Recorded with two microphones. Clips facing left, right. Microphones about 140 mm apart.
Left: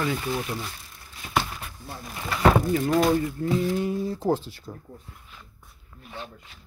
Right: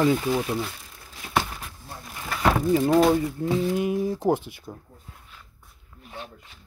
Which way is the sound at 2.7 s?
25° right (ahead or behind).